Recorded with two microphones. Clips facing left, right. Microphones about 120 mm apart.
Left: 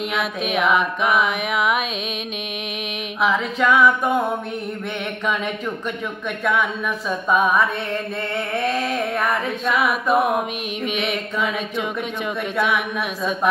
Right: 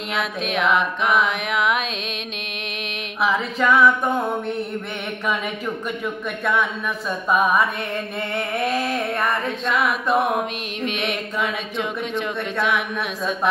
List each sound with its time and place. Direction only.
0.1 s music: centre (ahead or behind)
3.2 s music: centre (ahead or behind)
7.1 s speech: 5° right (ahead or behind)
8.4 s music: 5° right (ahead or behind)
12.5 s music: centre (ahead or behind)